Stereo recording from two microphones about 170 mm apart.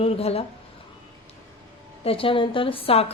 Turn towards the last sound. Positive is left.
turn(degrees=35)  # may be behind; listen again after turning